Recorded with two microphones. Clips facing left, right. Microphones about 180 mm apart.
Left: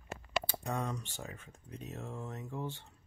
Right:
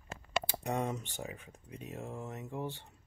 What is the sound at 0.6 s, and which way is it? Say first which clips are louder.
Speech: right 3 dB; 20° right (ahead or behind).